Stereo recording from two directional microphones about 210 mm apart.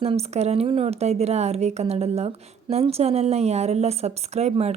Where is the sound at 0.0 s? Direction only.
30° right (ahead or behind).